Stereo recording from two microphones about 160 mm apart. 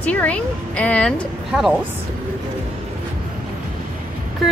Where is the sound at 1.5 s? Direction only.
5° right (ahead or behind).